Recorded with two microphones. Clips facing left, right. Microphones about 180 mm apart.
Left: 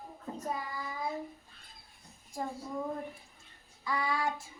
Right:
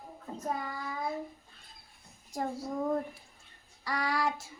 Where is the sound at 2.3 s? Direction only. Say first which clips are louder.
Right 3 dB; 75° right (ahead or behind).